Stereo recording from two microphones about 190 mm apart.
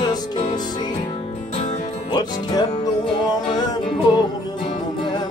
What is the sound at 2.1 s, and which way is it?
Music, 25° left (ahead or behind).